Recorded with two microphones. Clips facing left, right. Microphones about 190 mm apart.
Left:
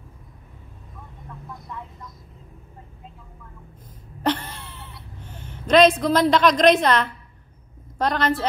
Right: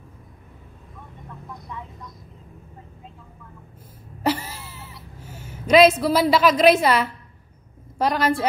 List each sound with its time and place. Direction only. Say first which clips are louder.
1.5 s vehicle: even; centre (ahead or behind)
4.2 s a sound: even; 5° right (ahead or behind)
8.0 s a woman's voice: right 1 dB; 10° right (ahead or behind)